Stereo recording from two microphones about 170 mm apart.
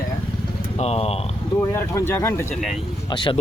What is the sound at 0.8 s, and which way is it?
Speech, 35° left (ahead or behind).